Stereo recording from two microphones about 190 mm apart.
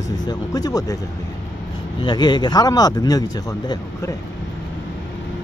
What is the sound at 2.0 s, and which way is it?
A man's voice, 20° left (ahead or behind).